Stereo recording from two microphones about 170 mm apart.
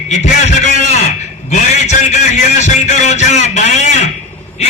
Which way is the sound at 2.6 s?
45° left (ahead or behind).